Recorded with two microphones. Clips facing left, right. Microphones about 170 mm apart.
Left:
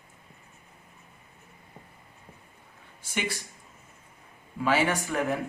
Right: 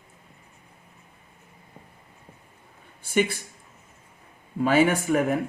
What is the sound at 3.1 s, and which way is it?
Speech, 50° right (ahead or behind).